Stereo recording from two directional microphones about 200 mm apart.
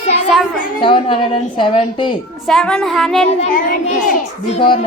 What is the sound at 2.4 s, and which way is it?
Speech, 5° left (ahead or behind).